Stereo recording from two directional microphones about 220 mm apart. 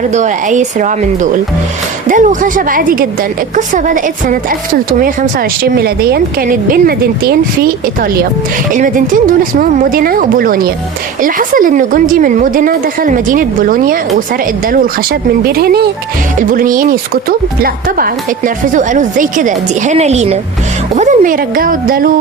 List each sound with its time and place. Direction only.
0.1 s a woman's voice: 35° right (ahead or behind)
8.7 s a woman's voice: 35° right (ahead or behind)